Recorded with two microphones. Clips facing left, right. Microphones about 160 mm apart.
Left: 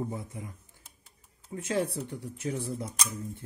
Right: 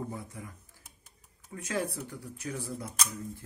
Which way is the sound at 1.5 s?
25° left (ahead or behind).